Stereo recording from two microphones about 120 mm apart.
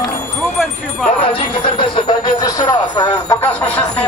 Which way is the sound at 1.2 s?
50° left (ahead or behind).